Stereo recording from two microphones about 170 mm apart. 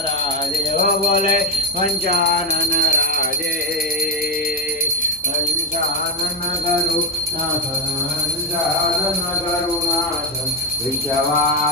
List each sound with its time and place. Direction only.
0.8 s music: 55° right (ahead or behind)
1.8 s jingle bell: 60° right (ahead or behind)
2.7 s music: 65° right (ahead or behind)